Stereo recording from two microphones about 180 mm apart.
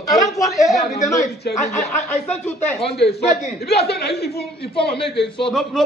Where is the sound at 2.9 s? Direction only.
65° left (ahead or behind).